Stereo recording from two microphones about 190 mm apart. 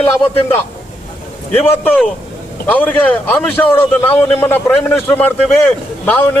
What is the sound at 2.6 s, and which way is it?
A man's voice, 10° left (ahead or behind).